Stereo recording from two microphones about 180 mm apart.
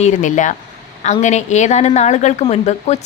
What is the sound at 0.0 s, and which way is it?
Speech, 45° left (ahead or behind).